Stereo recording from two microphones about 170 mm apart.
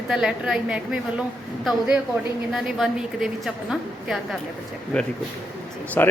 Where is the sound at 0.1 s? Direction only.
5° right (ahead or behind).